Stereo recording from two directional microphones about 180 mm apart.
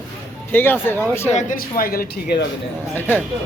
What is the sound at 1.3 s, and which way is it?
Speech, 45° left (ahead or behind).